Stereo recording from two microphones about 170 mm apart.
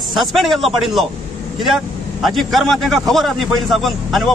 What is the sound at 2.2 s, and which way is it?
A man's voice, centre (ahead or behind).